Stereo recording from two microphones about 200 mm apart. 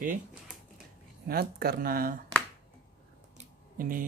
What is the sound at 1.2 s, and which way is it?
Speech, 50° right (ahead or behind).